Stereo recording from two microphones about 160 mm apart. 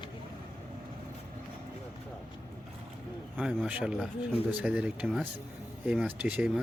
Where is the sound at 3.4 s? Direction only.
5° right (ahead or behind).